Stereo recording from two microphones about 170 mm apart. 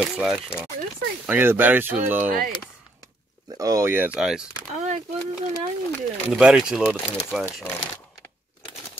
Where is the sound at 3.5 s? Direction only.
20° right (ahead or behind).